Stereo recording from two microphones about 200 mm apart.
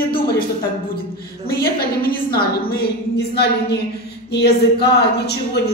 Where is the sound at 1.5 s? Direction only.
45° left (ahead or behind).